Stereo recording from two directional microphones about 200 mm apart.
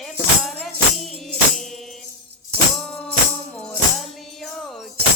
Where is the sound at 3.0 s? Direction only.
5° left (ahead or behind).